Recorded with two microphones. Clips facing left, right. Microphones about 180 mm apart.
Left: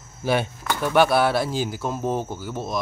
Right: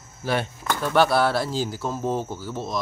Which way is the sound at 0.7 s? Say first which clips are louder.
Left 1 dB; 15° left (ahead or behind).